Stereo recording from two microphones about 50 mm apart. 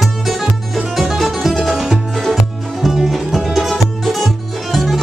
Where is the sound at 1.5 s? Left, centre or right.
Centre.